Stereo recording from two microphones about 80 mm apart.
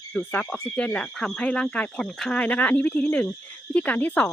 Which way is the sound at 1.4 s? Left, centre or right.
Centre.